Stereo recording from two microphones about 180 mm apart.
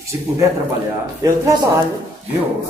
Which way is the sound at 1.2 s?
15° right (ahead or behind).